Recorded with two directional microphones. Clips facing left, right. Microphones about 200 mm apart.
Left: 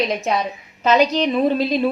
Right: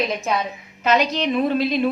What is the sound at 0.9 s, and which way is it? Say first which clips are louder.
Speech: left 3 dB; 35° left (ahead or behind).